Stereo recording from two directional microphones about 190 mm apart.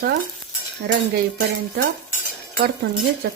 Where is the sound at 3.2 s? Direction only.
55° right (ahead or behind).